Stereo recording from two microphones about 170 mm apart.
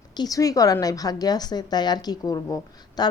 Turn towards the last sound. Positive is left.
turn(degrees=25)  # may be behind; listen again after turning